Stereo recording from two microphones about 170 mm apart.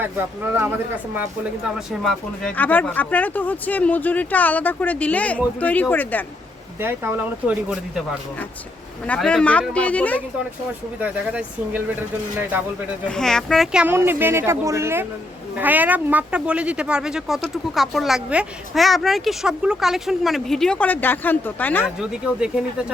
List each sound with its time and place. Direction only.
0.0 s speech: 10° right (ahead or behind)
1.6 s speech: centre (ahead or behind)
6.7 s speech: 15° right (ahead or behind)
9.0 s speech: 5° left (ahead or behind)
11.0 s speech: 10° right (ahead or behind)
13.1 s speech: 5° left (ahead or behind)
13.8 s speech: 15° right (ahead or behind); by 21.8 s 10° left (ahead or behind)
22.1 s speech: 5° right (ahead or behind)